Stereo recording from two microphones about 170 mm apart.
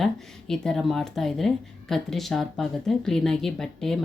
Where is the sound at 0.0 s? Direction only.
5° left (ahead or behind).